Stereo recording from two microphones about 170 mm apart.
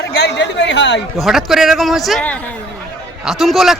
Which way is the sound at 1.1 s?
Centre (ahead or behind).